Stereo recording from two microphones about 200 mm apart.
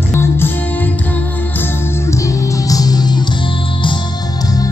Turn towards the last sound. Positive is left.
turn(degrees=20)  # may be behind; listen again after turning